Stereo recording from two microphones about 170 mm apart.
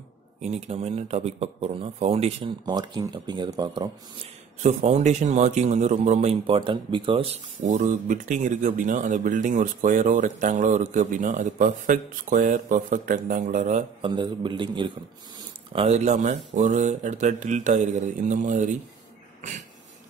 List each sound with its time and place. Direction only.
0.4 s speech: 40° right (ahead or behind)
2.6 s speech: 25° right (ahead or behind)
4.6 s speech: 40° right (ahead or behind)
7.6 s speech: 50° right (ahead or behind)
14.0 s speech: 25° right (ahead or behind)
15.7 s speech: 40° right (ahead or behind)